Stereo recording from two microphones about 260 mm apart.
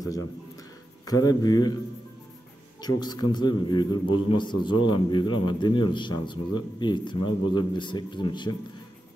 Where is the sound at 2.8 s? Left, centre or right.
Centre.